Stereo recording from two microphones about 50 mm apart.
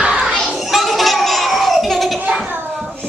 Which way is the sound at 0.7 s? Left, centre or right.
Centre.